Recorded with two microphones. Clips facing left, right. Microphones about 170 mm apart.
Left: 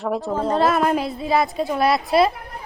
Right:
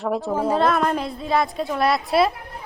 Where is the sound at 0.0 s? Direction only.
Centre (ahead or behind).